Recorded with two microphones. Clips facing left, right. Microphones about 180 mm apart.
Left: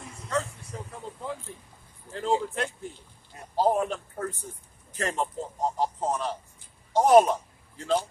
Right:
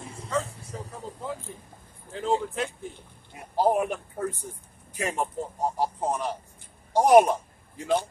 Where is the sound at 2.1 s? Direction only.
Centre (ahead or behind).